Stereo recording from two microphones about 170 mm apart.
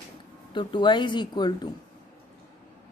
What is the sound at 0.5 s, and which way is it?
Speech, 25° left (ahead or behind).